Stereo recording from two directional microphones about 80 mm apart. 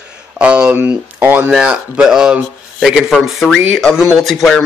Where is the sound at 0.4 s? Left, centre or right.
Centre.